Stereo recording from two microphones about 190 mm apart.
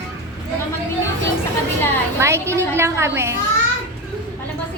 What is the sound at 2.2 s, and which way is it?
A woman's voice, 15° right (ahead or behind).